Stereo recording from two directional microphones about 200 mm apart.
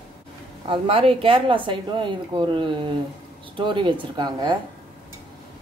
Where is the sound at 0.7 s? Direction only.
25° right (ahead or behind).